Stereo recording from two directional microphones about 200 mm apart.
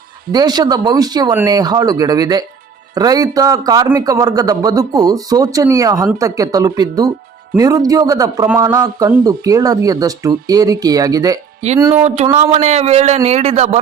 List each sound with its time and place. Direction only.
0.3 s a man's voice: 20° right (ahead or behind)
12.0 s a man's voice: 35° right (ahead or behind)